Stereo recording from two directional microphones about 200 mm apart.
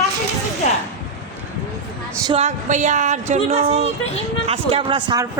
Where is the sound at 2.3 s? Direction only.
35° right (ahead or behind).